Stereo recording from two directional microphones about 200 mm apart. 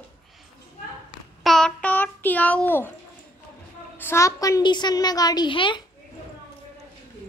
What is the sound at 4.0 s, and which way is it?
A woman's voice, 15° left (ahead or behind).